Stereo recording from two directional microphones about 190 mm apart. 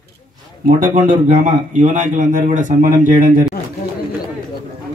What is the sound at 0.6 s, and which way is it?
A man's voice, 45° right (ahead or behind).